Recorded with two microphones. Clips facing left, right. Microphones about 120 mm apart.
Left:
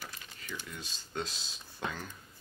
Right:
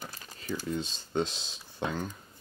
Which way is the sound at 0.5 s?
35° right (ahead or behind).